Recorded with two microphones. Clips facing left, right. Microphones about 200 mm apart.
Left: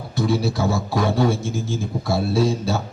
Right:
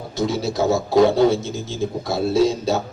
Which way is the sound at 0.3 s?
20° right (ahead or behind).